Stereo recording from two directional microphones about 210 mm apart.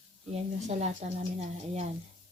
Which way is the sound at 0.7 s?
30° right (ahead or behind).